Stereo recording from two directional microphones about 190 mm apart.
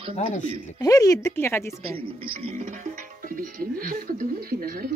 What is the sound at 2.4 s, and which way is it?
Music, 35° right (ahead or behind).